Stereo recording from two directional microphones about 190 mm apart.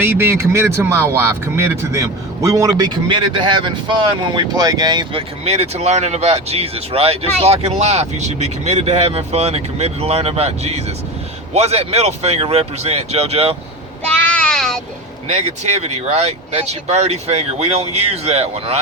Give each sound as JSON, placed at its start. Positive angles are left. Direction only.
{"t": 0.0, "sound": "speech", "side_deg": -10}
{"t": 14.2, "sound": "child singing", "side_deg": 5}
{"t": 15.3, "sound": "speech", "side_deg": -35}